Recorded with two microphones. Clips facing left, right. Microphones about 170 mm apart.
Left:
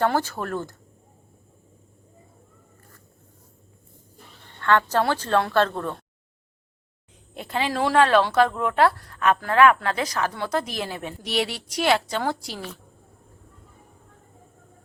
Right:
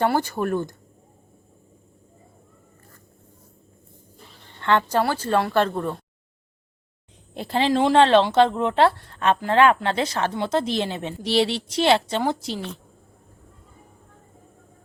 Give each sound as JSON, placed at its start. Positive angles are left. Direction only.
{"t": 0.0, "sound": "a woman's voice", "side_deg": -15}
{"t": 4.6, "sound": "a woman's voice", "side_deg": -15}
{"t": 7.3, "sound": "a woman's voice", "side_deg": -30}
{"t": 7.7, "sound": "speech", "side_deg": -20}